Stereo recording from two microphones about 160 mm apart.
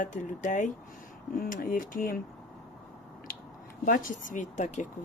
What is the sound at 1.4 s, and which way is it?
Speech, 60° left (ahead or behind).